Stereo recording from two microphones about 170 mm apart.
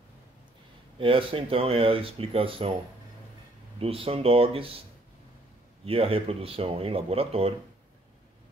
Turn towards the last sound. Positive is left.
turn(degrees=-35)  # may be behind; listen again after turning